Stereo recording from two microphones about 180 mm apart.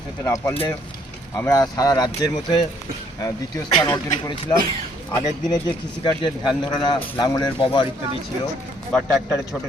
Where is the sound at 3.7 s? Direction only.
30° left (ahead or behind).